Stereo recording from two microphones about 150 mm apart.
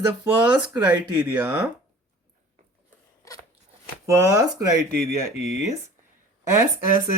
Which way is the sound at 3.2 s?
25° left (ahead or behind).